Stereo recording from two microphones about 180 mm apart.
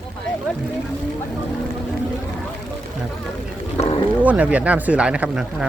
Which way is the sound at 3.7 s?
35° left (ahead or behind).